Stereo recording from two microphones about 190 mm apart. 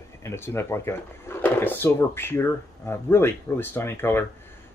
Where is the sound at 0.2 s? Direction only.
15° left (ahead or behind).